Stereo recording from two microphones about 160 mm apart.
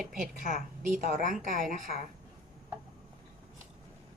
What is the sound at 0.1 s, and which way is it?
A woman's voice, 60° right (ahead or behind).